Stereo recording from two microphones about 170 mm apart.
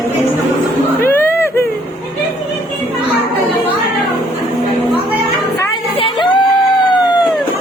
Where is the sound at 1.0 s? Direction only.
15° left (ahead or behind).